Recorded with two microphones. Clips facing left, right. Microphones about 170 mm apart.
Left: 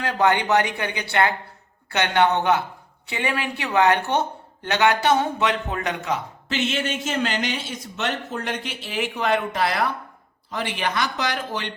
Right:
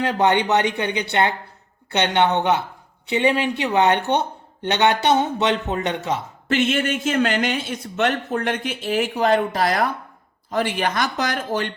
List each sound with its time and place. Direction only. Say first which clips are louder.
0.0 s speech: right 2 dB; 20° right (ahead or behind)
6.5 s speech: right 5 dB; 55° right (ahead or behind)